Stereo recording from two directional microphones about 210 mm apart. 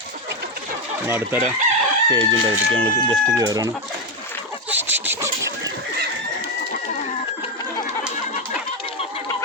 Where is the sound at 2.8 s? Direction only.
20° right (ahead or behind).